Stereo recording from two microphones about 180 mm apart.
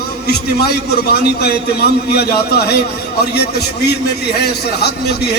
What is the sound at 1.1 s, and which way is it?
A man's voice, 65° left (ahead or behind).